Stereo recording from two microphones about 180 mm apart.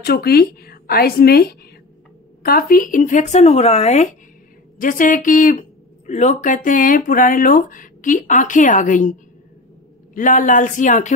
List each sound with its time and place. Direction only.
0.0 s a woman's voice: 60° left (ahead or behind); by 9.1 s 45° left (ahead or behind)
10.1 s speech: 45° left (ahead or behind)